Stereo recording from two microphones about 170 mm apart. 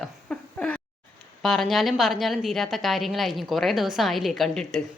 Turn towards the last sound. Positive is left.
turn(degrees=0)  # may be behind; listen again after turning